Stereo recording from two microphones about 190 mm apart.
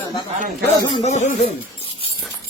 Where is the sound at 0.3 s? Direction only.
50° right (ahead or behind).